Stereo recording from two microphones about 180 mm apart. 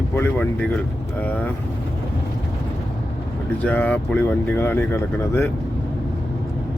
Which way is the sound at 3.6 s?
10° left (ahead or behind).